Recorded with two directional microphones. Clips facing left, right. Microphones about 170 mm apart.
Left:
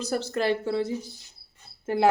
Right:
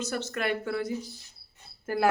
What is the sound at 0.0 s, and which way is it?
Speech, 35° left (ahead or behind).